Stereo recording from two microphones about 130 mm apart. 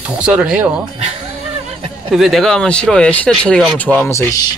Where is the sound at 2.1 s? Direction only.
Centre (ahead or behind); by 4.3 s 15° left (ahead or behind).